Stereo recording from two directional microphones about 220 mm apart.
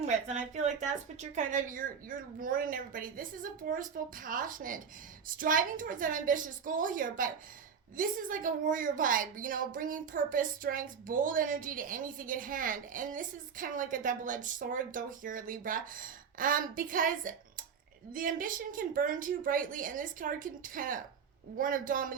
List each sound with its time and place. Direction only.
0.0 s a woman's voice: 30° right (ahead or behind)